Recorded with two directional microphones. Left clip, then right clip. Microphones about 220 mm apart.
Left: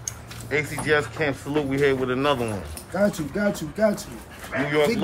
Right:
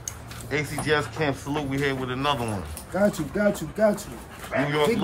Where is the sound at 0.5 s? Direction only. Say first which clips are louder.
Left 2 dB; 15° right (ahead or behind).